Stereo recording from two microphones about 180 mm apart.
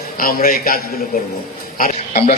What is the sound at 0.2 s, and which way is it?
Speech, 55° left (ahead or behind).